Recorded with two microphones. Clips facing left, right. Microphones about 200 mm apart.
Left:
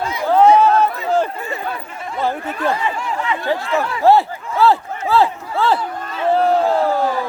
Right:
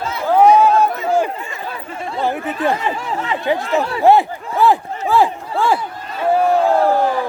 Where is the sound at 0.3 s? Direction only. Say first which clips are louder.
Right 1 dB; 10° right (ahead or behind).